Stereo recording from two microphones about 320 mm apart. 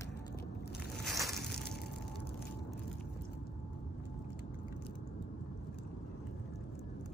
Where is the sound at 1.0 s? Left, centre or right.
Centre.